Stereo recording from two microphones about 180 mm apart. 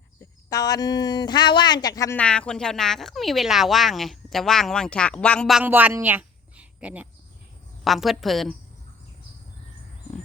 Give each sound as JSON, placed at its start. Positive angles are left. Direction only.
{"t": 0.2, "sound": "speech", "side_deg": 20}
{"t": 2.1, "sound": "speech", "side_deg": 5}